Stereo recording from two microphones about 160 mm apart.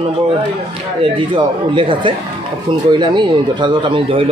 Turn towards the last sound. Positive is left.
turn(degrees=-30)  # may be behind; listen again after turning